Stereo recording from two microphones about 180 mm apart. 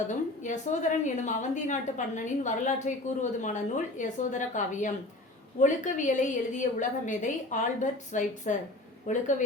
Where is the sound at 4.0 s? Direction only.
45° left (ahead or behind).